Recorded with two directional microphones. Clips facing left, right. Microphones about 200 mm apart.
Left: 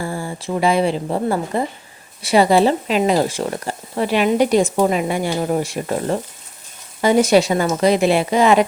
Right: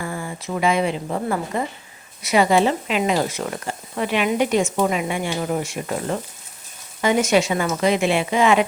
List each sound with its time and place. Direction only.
0.0 s speech: 30° left (ahead or behind)